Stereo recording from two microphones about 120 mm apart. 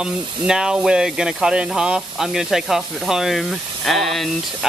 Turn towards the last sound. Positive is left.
turn(degrees=0)  # may be behind; listen again after turning